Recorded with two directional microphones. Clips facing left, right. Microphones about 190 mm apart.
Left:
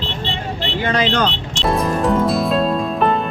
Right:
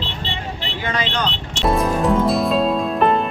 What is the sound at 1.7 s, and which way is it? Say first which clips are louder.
Music: even; centre (ahead or behind).